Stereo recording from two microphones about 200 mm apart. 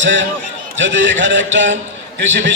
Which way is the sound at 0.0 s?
65° right (ahead or behind).